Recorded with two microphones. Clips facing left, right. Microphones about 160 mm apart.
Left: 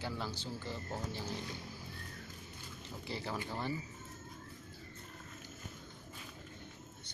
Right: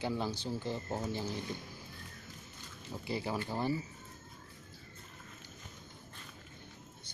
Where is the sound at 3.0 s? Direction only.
15° right (ahead or behind).